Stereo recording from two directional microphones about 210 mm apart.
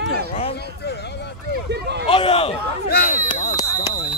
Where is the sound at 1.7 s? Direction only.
55° right (ahead or behind).